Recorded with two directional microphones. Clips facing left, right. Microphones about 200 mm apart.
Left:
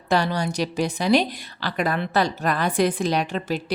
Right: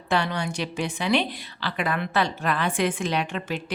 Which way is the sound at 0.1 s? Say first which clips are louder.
Left 3 dB; 40° left (ahead or behind).